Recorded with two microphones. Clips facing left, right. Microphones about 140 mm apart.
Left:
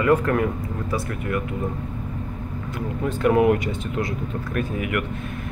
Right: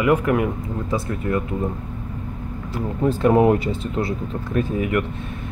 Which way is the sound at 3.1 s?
30° right (ahead or behind).